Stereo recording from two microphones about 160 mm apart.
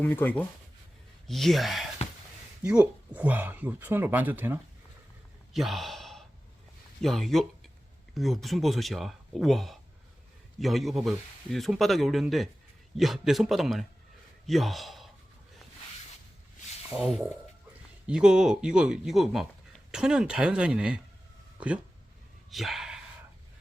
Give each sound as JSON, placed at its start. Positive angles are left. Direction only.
{"t": 0.0, "sound": "speech", "side_deg": 10}
{"t": 2.0, "sound": "a sound", "side_deg": 40}
{"t": 2.6, "sound": "speech", "side_deg": -10}
{"t": 5.5, "sound": "a man's voice", "side_deg": 0}
{"t": 17.0, "sound": "speech", "side_deg": 0}
{"t": 22.4, "sound": "dog", "side_deg": 0}